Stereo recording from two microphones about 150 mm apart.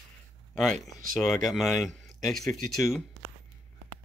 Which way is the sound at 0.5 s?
Centre (ahead or behind).